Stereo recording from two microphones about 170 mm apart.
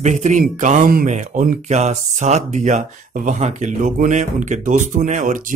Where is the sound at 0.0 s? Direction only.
45° right (ahead or behind).